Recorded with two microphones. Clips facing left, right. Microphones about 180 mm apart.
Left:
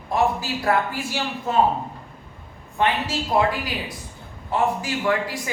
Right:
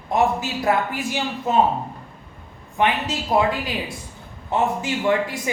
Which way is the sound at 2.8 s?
20° right (ahead or behind).